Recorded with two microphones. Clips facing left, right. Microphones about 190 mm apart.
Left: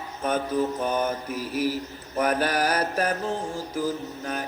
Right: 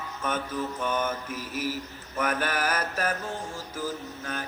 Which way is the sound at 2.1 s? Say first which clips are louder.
Left 5 dB; 35° left (ahead or behind).